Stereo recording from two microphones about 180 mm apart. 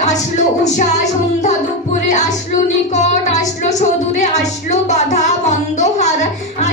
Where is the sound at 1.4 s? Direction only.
40° left (ahead or behind).